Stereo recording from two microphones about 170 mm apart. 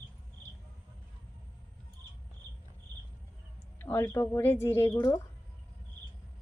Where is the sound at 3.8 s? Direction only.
10° left (ahead or behind).